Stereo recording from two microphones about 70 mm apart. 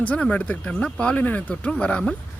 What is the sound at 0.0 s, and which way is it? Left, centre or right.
Speech, centre.